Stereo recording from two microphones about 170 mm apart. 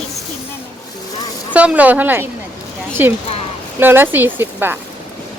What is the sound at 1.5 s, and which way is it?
Speech, 5° right (ahead or behind).